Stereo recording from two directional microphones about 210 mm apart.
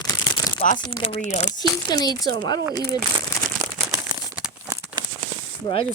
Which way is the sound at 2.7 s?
45° right (ahead or behind).